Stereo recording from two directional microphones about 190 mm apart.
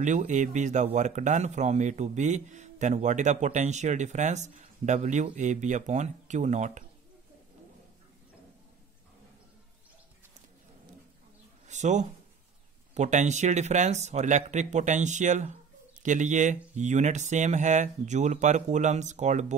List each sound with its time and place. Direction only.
0.0 s a man's voice: 40° right (ahead or behind)
11.6 s a sound: 40° right (ahead or behind)
12.9 s a man's voice: 40° right (ahead or behind)